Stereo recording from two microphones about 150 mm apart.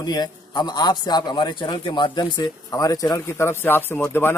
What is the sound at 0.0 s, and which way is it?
A man's voice, 25° left (ahead or behind).